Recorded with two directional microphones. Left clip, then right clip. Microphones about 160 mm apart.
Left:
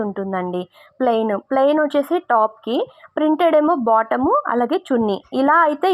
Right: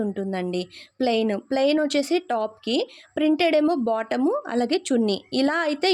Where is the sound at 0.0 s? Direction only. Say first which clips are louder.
Left 5 dB; 15° right (ahead or behind).